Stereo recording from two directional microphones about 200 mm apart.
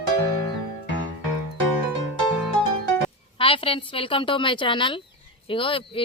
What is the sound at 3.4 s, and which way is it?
A woman's voice, 25° left (ahead or behind).